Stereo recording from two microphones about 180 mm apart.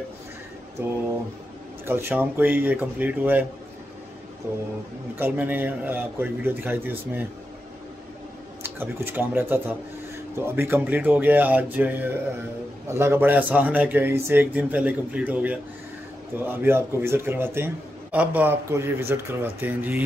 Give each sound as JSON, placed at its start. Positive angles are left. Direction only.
{"t": 0.8, "sound": "speech", "side_deg": -15}
{"t": 5.1, "sound": "speech", "side_deg": -10}
{"t": 8.6, "sound": "speech", "side_deg": -10}